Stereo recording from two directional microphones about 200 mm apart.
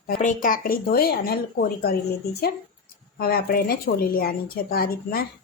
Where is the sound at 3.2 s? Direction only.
50° left (ahead or behind).